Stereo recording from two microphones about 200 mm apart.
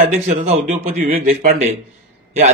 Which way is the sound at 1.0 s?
45° right (ahead or behind).